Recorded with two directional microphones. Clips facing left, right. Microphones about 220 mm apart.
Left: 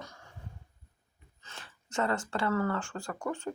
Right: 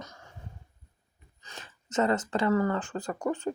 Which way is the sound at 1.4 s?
15° right (ahead or behind).